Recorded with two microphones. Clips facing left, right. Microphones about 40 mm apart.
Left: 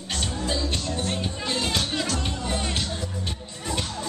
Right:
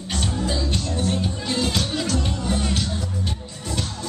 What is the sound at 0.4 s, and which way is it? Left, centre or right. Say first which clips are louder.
Music: right 1 dB; centre.